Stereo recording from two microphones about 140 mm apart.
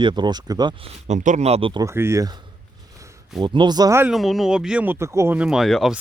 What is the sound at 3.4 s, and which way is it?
Speech, 30° right (ahead or behind).